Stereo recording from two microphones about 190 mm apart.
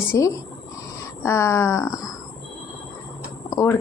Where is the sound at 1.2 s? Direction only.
15° left (ahead or behind).